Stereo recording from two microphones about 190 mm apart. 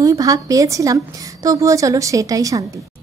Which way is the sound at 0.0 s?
20° right (ahead or behind).